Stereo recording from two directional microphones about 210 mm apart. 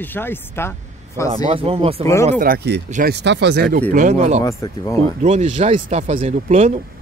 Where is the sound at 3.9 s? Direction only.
35° right (ahead or behind).